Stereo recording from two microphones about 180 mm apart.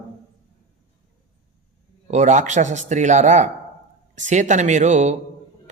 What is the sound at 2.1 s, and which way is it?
A man's voice, 40° right (ahead or behind).